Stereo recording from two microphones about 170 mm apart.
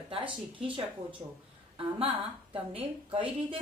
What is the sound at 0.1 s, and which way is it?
Speech, 30° right (ahead or behind).